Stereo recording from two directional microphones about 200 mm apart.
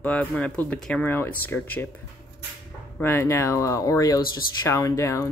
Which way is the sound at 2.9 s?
10° left (ahead or behind).